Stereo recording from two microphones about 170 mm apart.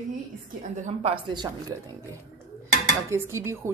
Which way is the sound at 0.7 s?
45° right (ahead or behind).